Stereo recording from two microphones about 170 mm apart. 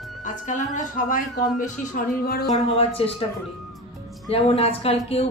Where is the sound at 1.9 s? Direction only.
60° left (ahead or behind).